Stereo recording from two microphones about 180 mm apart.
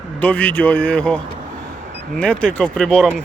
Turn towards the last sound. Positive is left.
turn(degrees=5)  # may be behind; listen again after turning